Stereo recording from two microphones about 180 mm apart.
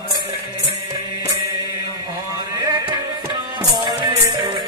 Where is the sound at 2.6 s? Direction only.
20° right (ahead or behind).